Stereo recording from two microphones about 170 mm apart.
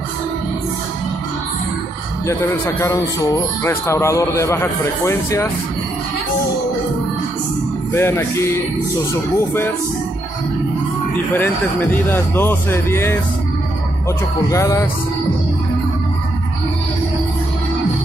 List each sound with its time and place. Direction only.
2.2 s speech: 15° left (ahead or behind)
7.9 s speech: 15° left (ahead or behind)
11.3 s speech: 10° left (ahead or behind)
14.5 s music: 20° left (ahead or behind)